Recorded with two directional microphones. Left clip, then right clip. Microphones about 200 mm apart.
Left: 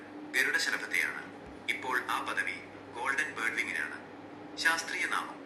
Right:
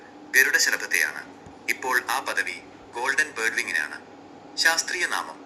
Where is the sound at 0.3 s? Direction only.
30° right (ahead or behind).